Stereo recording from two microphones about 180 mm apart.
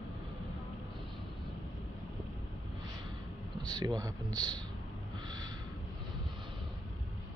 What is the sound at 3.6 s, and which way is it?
Speech, 20° right (ahead or behind).